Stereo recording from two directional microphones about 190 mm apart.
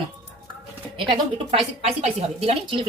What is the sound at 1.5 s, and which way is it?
Speech, 35° right (ahead or behind).